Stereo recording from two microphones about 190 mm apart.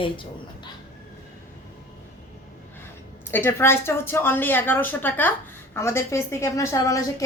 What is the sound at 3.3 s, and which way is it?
A woman's voice, 10° left (ahead or behind).